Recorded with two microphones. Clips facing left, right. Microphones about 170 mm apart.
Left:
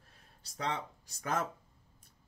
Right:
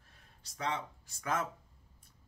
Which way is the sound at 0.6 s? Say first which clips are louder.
Even; 35° left (ahead or behind).